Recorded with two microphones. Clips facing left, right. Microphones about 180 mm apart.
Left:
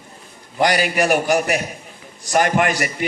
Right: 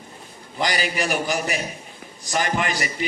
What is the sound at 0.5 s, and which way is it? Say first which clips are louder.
Speech: left 7 dB; 55° left (ahead or behind).